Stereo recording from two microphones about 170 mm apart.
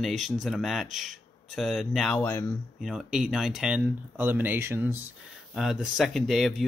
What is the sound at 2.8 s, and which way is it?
Speech, centre (ahead or behind).